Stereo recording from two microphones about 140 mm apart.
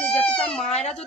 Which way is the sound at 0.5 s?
50° left (ahead or behind).